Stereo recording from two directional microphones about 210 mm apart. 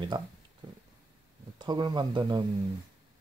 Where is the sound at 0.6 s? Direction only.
20° right (ahead or behind).